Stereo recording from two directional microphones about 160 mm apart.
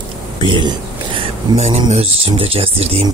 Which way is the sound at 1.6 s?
45° right (ahead or behind).